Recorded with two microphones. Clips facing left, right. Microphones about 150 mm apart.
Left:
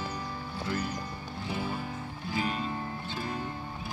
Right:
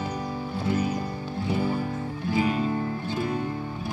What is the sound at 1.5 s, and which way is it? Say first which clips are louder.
Music: right 8 dB; 50° right (ahead or behind).